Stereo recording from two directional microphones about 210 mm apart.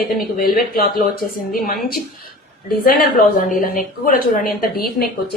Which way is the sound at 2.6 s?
45° left (ahead or behind).